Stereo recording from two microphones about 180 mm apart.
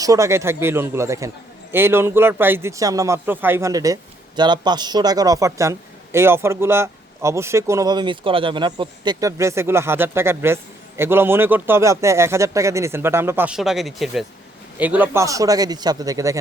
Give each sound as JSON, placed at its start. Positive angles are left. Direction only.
{"t": 0.0, "sound": "a man's voice", "side_deg": -20}